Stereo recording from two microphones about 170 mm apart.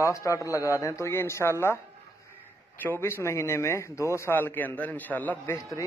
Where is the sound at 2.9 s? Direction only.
15° left (ahead or behind).